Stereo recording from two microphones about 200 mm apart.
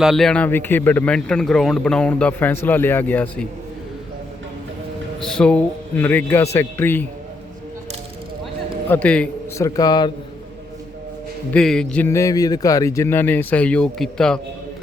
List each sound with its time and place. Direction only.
0.0 s a man's voice: centre (ahead or behind)
5.2 s a man's voice: 5° left (ahead or behind)
8.9 s a man's voice: 5° left (ahead or behind)
9.6 s a man's voice: 20° left (ahead or behind)
11.5 s a man's voice: 5° left (ahead or behind)